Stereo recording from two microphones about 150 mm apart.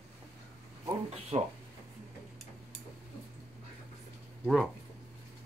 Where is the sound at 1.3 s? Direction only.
40° right (ahead or behind).